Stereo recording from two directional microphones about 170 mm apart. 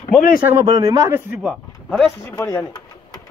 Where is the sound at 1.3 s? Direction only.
Centre (ahead or behind).